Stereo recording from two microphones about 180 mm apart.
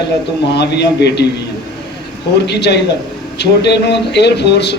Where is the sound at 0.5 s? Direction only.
70° left (ahead or behind).